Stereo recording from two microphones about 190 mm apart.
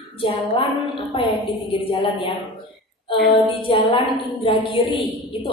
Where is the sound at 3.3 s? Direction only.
30° left (ahead or behind).